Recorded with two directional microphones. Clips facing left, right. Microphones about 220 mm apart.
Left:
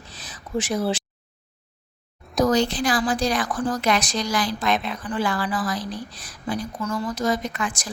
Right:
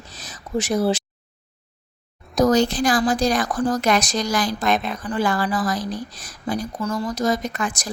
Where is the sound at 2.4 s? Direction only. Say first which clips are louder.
Right 3 dB; 45° right (ahead or behind).